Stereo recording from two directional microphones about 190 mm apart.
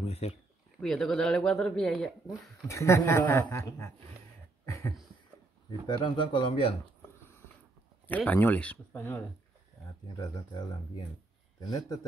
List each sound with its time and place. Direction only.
0.0 s speech: 35° left (ahead or behind)
0.7 s speech: 5° left (ahead or behind)
2.2 s speech: 15° left (ahead or behind)
4.6 s a sound: 15° left (ahead or behind)
5.7 s a man's voice: 25° left (ahead or behind)
8.1 s a man's voice: 10° left (ahead or behind)